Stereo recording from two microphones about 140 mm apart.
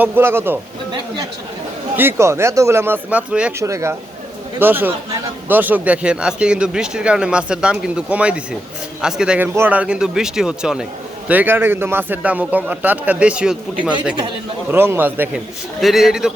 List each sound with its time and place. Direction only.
0.0 s speech: 15° right (ahead or behind)
2.0 s speech: 20° right (ahead or behind)
3.6 s a man's voice: 20° right (ahead or behind)
15.8 s speech: centre (ahead or behind)